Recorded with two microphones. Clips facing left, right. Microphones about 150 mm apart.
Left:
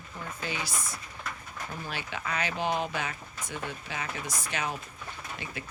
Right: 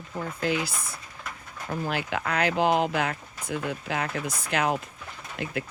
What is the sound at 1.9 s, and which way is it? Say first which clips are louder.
Speech: right 6 dB; 80° right.